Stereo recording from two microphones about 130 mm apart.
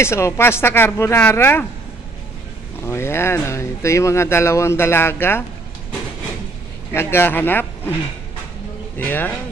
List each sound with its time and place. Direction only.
0.0 s speech: 20° left (ahead or behind)
2.8 s speech: 20° left (ahead or behind)
6.9 s speech: 20° left (ahead or behind)
8.9 s speech: 15° left (ahead or behind)